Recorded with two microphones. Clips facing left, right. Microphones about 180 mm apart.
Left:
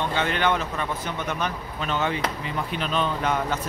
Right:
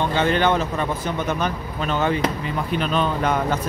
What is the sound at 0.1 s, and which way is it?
Speech, 35° right (ahead or behind).